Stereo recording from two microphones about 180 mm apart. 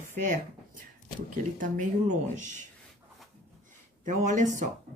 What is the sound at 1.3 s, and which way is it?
Speech, 45° right (ahead or behind).